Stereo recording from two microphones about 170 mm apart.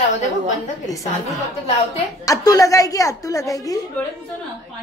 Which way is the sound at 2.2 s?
20° left (ahead or behind).